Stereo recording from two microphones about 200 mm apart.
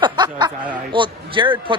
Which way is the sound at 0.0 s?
20° right (ahead or behind).